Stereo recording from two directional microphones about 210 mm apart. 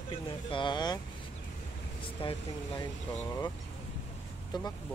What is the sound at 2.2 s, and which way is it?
Speech, 20° left (ahead or behind).